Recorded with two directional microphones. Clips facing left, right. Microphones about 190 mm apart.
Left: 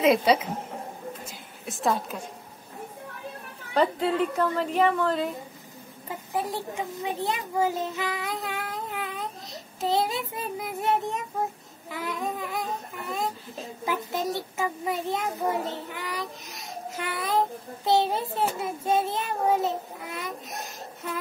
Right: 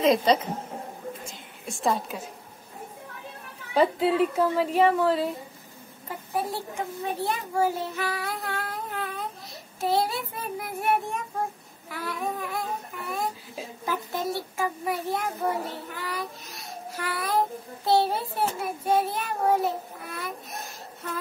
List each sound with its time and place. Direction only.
0.0 s a child's voice: 5° left (ahead or behind)
1.7 s a woman's voice: centre (ahead or behind)
3.7 s a woman's voice: 5° right (ahead or behind)
6.0 s a child's voice: 15° left (ahead or behind)